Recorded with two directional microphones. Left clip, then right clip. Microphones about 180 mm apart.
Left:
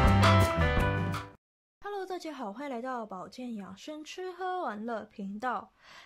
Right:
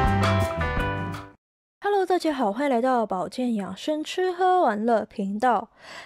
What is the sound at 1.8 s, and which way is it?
Speech, 40° right (ahead or behind).